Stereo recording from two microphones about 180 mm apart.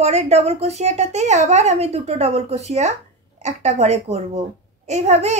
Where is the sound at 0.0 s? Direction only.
40° right (ahead or behind).